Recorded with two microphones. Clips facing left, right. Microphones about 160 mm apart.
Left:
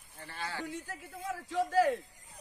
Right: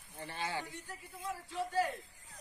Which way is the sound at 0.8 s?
90° left.